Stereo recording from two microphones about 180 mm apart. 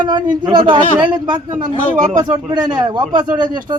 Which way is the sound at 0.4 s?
25° right (ahead or behind).